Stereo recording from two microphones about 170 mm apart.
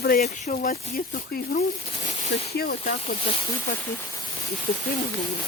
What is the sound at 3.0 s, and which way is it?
Speech, 35° left (ahead or behind).